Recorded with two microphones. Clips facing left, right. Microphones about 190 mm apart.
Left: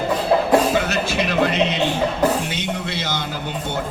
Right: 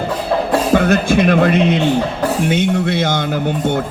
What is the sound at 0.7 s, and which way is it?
Speech, 55° right (ahead or behind).